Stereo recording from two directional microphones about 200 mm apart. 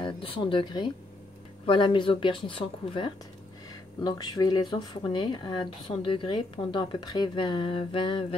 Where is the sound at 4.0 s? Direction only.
20° left (ahead or behind).